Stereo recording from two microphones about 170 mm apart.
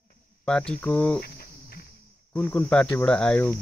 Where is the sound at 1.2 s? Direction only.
65° left (ahead or behind).